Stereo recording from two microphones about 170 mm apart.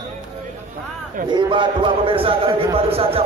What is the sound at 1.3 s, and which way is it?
Speech, 30° right (ahead or behind).